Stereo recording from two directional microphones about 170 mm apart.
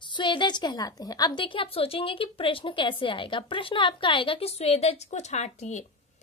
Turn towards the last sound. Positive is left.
turn(degrees=45)  # may be behind; listen again after turning